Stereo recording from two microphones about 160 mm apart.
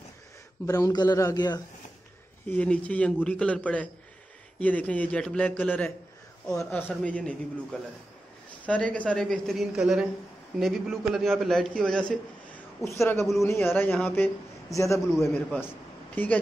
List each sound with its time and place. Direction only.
0.7 s a man's voice: 20° left (ahead or behind)
2.5 s a man's voice: 10° left (ahead or behind)
8.6 s a man's voice: 10° left (ahead or behind)
12.8 s a man's voice: 15° left (ahead or behind)